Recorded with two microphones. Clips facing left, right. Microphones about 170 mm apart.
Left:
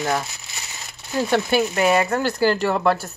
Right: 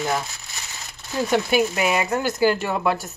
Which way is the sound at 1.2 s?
10° right (ahead or behind).